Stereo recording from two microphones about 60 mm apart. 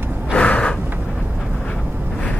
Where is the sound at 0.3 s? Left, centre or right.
Centre.